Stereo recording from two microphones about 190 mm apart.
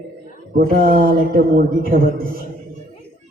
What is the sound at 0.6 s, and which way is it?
A man's voice, 50° right (ahead or behind).